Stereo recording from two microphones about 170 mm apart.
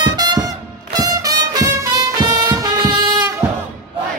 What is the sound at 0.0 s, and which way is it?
Music, 25° right (ahead or behind).